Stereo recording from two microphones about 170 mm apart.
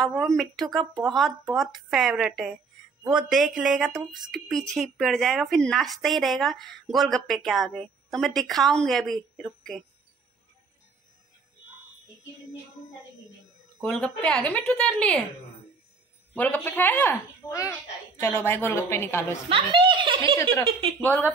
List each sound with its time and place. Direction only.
0.0 s speech: centre (ahead or behind)
13.7 s speech: 5° left (ahead or behind)
16.3 s a woman's voice: 10° left (ahead or behind)
19.5 s a woman's voice: 25° right (ahead or behind)
21.0 s a woman's voice: 10° left (ahead or behind)